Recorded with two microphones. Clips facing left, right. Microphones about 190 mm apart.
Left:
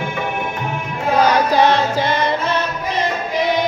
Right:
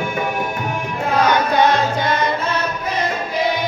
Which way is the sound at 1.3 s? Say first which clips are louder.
Left 1 dB; 30° left (ahead or behind).